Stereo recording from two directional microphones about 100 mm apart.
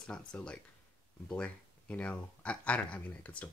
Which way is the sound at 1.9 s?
15° left (ahead or behind).